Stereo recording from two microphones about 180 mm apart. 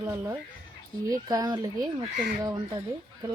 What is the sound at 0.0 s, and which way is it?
Speech, 15° right (ahead or behind).